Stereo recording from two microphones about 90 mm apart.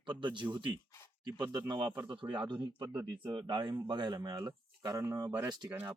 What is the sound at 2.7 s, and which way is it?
Speech, 50° right (ahead or behind).